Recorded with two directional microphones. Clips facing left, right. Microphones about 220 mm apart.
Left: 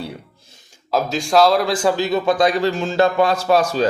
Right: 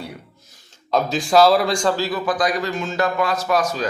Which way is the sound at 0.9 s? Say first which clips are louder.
Even; centre (ahead or behind).